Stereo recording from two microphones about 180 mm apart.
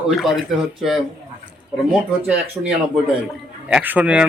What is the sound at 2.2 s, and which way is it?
Speech, 5° right (ahead or behind).